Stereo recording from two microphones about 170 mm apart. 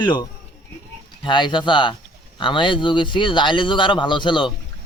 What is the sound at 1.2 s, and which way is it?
Speech, 30° left (ahead or behind).